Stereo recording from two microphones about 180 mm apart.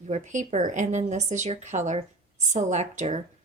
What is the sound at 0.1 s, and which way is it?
A woman's voice, 40° right (ahead or behind).